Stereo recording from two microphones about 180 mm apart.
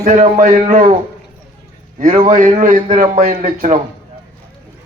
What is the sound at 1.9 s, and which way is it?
A man's voice, 45° right (ahead or behind).